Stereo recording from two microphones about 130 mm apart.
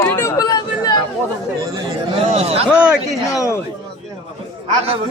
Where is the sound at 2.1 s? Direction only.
50° right (ahead or behind).